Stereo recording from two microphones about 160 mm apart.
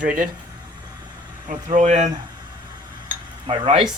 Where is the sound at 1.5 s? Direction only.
45° right (ahead or behind).